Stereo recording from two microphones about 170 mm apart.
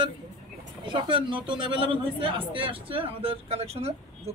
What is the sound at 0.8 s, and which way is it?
A man's voice, 30° right (ahead or behind).